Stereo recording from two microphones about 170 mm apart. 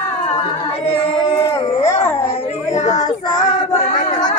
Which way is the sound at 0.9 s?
30° left (ahead or behind).